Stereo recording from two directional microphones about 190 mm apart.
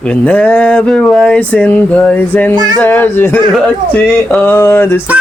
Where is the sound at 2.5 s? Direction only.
20° right (ahead or behind).